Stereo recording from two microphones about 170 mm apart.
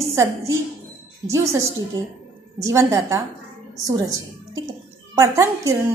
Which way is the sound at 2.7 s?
15° right (ahead or behind).